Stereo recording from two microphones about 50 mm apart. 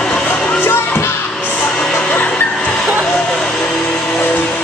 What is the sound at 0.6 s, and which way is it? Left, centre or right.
Music, left.